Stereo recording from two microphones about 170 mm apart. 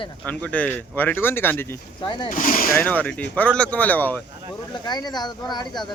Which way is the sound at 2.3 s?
55° left (ahead or behind).